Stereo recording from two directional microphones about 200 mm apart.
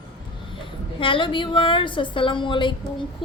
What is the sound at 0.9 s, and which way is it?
A woman's voice, 25° left (ahead or behind).